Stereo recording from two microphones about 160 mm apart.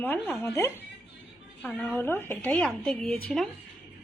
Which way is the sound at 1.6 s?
5° left (ahead or behind).